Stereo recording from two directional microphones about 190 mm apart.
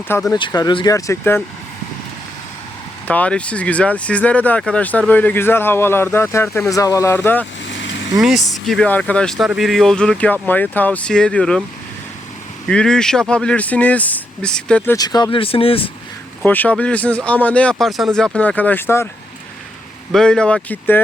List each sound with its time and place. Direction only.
0.3 s speech: 25° left (ahead or behind)
3.1 s speech: 5° left (ahead or behind)
8.1 s speech: centre (ahead or behind)
12.6 s speech: 5° left (ahead or behind)
14.9 s speech: 20° left (ahead or behind)
16.4 s speech: 10° left (ahead or behind)
20.1 s speech: 5° left (ahead or behind)